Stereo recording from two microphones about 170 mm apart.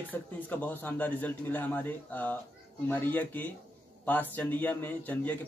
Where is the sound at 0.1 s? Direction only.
10° left (ahead or behind).